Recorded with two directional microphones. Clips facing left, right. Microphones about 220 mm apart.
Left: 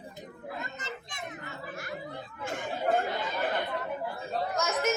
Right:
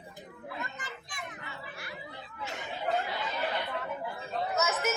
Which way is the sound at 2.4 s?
50° left (ahead or behind).